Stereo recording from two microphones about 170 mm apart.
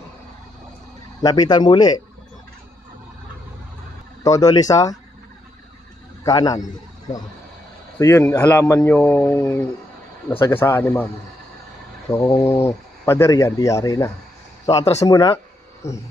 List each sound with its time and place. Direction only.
1.2 s speech: 20° left (ahead or behind)
4.2 s speech: 20° left (ahead or behind)
6.2 s speech: 20° left (ahead or behind)
8.0 s speech: 15° left (ahead or behind)
12.1 s speech: 15° left (ahead or behind)
15.0 s a sound: 20° left (ahead or behind)